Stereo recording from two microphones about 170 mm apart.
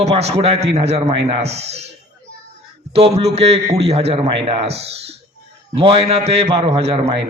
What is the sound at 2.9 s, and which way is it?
A man's voice, 35° right (ahead or behind).